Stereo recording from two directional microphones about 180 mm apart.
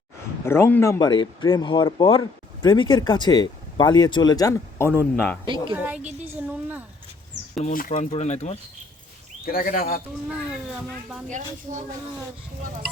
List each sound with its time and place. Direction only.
0.4 s speech: 15° left (ahead or behind)
5.7 s speech: 10° right (ahead or behind)
6.0 s a woman's voice: 40° right (ahead or behind)
6.3 s speech: 10° right (ahead or behind)
7.6 s speech: 50° left (ahead or behind)
9.5 s speech: 55° left (ahead or behind)
10.5 s speech: 5° right (ahead or behind)
11.3 s speech: 45° right (ahead or behind)